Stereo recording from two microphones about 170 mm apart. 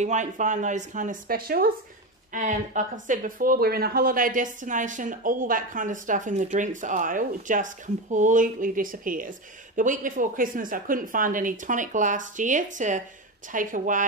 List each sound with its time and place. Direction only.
0.0 s a woman's voice: 45° right (ahead or behind)
2.3 s a woman's voice: 50° right (ahead or behind)